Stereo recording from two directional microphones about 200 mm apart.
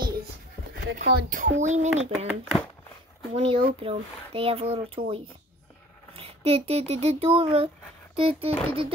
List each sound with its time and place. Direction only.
0.9 s speech: 45° right (ahead or behind)
2.2 s speech: centre (ahead or behind)
3.3 s speech: 25° right (ahead or behind)